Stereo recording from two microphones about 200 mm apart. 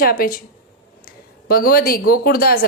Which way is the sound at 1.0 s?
50° left (ahead or behind).